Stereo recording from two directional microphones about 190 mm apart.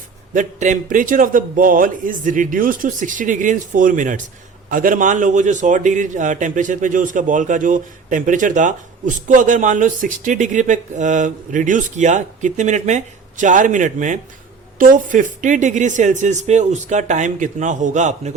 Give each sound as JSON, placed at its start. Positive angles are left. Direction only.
{"t": 0.3, "sound": "a man's voice", "side_deg": -40}